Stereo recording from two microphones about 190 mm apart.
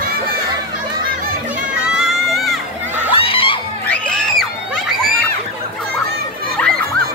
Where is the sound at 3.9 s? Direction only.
Centre (ahead or behind).